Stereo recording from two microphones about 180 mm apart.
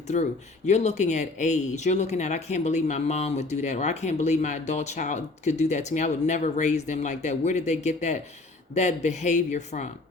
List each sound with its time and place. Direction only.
0.1 s speech: 40° left (ahead or behind)